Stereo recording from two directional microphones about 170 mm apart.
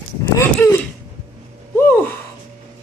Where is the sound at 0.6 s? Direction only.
10° left (ahead or behind).